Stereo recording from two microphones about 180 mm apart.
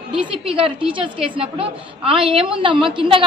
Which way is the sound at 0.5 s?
30° right (ahead or behind).